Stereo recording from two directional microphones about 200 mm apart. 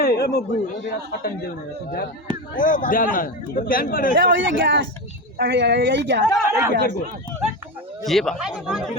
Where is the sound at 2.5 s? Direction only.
40° left (ahead or behind).